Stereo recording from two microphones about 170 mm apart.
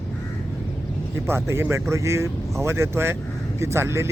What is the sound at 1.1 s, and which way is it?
Speech, 15° right (ahead or behind).